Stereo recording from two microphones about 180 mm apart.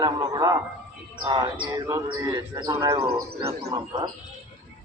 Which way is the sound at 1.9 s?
15° right (ahead or behind).